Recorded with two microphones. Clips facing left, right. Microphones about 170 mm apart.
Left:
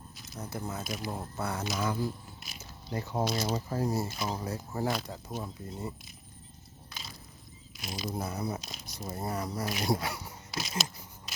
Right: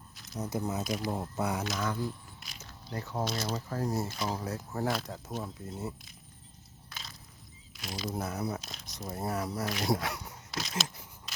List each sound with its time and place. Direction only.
0.3 s speech: 20° right (ahead or behind)
1.6 s speech: 5° left (ahead or behind)
2.6 s a sound: 10° left (ahead or behind)
3.2 s speech: centre (ahead or behind)
3.5 s speech: 10° left (ahead or behind)
4.4 s speech: centre (ahead or behind)
7.7 s a sound: 10° left (ahead or behind)
8.1 s speech: centre (ahead or behind)
9.6 s speech: 10° left (ahead or behind)